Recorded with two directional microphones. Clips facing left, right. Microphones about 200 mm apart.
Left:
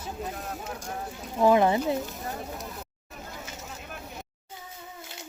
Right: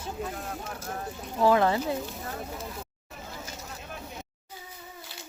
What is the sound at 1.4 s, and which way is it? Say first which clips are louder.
Speech: left 2 dB; 15° left (ahead or behind).